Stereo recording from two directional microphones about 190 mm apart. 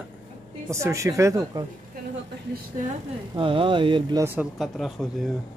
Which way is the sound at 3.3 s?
25° right (ahead or behind).